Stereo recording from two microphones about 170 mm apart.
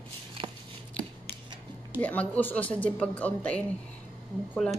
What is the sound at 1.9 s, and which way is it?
A woman's voice, 10° left (ahead or behind).